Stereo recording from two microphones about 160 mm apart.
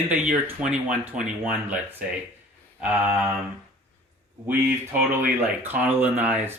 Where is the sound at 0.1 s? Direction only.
10° right (ahead or behind).